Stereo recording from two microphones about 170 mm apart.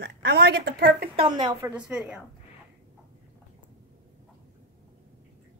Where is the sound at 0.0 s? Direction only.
85° right; by 1.1 s 65° right (ahead or behind).